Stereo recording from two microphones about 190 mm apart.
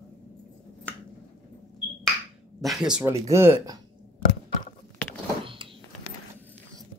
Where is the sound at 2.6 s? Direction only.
Centre (ahead or behind).